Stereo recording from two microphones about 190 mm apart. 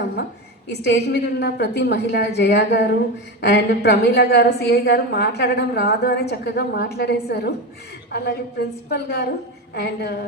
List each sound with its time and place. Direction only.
0.7 s a woman's voice: 65° left (ahead or behind)